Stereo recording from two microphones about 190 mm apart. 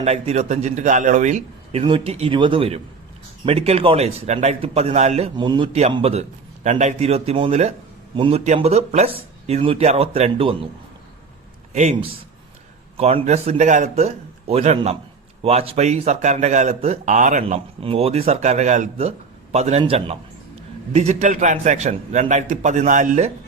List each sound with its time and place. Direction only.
0.0 s a man's voice: 35° right (ahead or behind)
11.7 s a man's voice: 35° right (ahead or behind)
17.4 s a man's voice: 30° right (ahead or behind)